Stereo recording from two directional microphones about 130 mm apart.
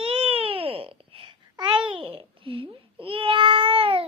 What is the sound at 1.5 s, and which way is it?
Babbling, 35° right (ahead or behind).